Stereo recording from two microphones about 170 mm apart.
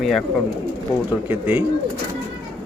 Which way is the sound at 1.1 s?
10° right (ahead or behind).